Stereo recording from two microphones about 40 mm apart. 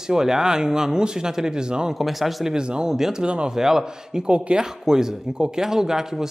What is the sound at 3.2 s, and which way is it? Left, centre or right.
Speech, right.